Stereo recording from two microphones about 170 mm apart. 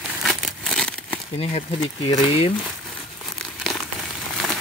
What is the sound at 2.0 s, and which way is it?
Speech, 25° left (ahead or behind).